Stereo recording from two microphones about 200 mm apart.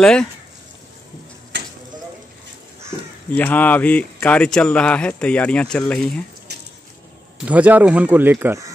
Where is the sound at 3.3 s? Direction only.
10° left (ahead or behind).